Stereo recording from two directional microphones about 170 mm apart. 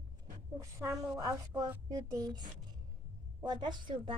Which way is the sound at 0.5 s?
15° right (ahead or behind).